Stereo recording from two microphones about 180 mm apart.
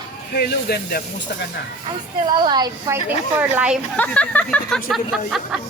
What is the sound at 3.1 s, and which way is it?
Speech, 10° right (ahead or behind).